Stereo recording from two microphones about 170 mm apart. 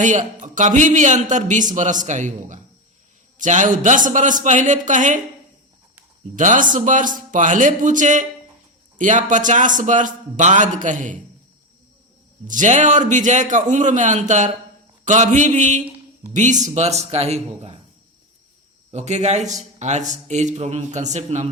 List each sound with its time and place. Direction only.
0.0 s a man's voice: 45° right (ahead or behind)
6.3 s a man's voice: 50° right (ahead or behind)
12.5 s a man's voice: 45° right (ahead or behind)
18.9 s a man's voice: 40° right (ahead or behind)